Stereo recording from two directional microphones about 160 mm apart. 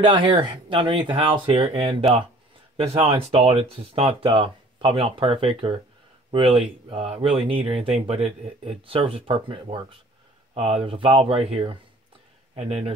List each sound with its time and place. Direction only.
0.0 s speech: 30° right (ahead or behind)
2.8 s speech: 35° right (ahead or behind)